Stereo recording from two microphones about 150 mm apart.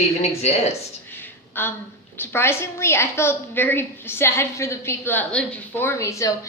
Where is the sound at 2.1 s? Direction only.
15° left (ahead or behind).